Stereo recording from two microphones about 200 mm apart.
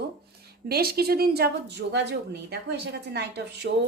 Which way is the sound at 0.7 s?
50° right (ahead or behind).